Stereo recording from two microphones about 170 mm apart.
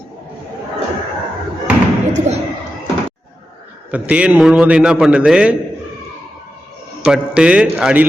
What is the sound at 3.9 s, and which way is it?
A man's voice, 10° right (ahead or behind).